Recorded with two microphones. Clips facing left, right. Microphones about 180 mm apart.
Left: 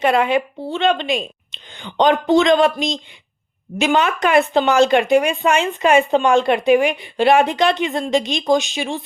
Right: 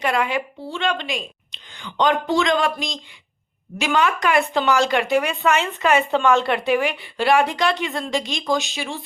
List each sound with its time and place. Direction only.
0.0 s speech: 25° left (ahead or behind)